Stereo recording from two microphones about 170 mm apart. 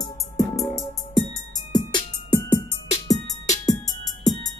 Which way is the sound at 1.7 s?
25° left (ahead or behind).